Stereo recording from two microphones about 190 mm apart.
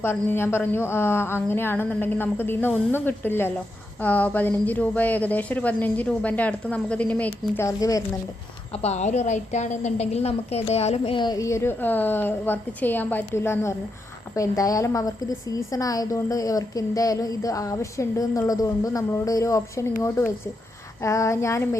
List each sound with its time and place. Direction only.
0.0 s a woman's voice: 10° left (ahead or behind)
8.7 s a woman's voice: 35° left (ahead or behind); by 21.8 s 15° left (ahead or behind)